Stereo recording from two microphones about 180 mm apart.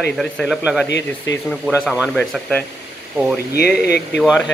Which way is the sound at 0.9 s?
80° left.